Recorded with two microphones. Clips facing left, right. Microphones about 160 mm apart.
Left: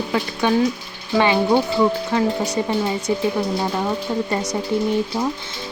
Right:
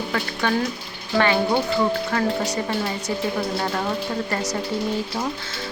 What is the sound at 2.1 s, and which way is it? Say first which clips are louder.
Speech: left 3 dB; 20° left (ahead or behind).